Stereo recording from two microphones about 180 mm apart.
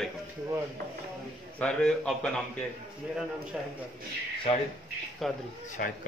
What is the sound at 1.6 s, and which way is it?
Speech, 5° left (ahead or behind).